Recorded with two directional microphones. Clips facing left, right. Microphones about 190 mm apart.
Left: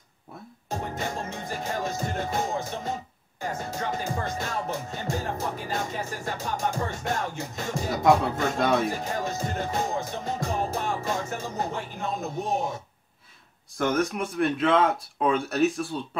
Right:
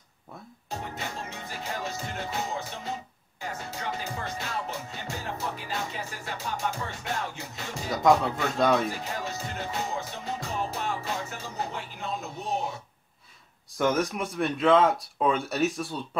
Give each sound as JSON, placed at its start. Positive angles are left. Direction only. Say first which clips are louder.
{"t": 0.7, "sound": "music", "louder": "left 5 dB", "side_deg": 45}
{"t": 8.9, "sound": "music", "louder": "left 4 dB", "side_deg": 50}
{"t": 13.7, "sound": "speech", "louder": "left 1 dB", "side_deg": 0}